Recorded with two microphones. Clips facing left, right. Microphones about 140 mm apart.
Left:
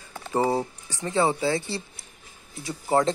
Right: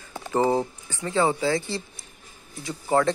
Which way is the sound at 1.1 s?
20° left (ahead or behind).